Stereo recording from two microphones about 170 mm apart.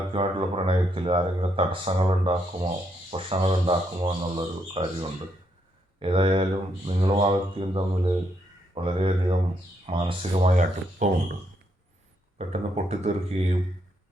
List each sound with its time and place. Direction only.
0.1 s speech: 35° right (ahead or behind)
12.4 s speech: 40° right (ahead or behind)